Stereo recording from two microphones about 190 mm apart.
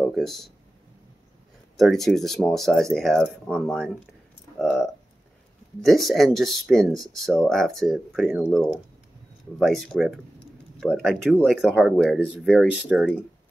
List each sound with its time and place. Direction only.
0.0 s speech: centre (ahead or behind)
1.8 s speech: centre (ahead or behind)